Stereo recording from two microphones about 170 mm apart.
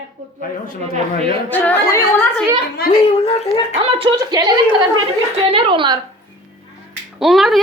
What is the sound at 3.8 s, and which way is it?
Speech, 30° right (ahead or behind).